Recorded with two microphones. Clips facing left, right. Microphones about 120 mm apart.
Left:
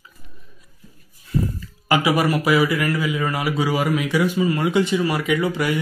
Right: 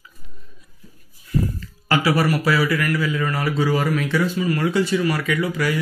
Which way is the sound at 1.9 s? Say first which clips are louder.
Left 1 dB; 15° left (ahead or behind).